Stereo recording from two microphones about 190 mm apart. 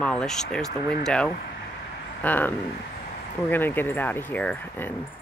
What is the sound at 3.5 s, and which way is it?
Speech, 10° left (ahead or behind).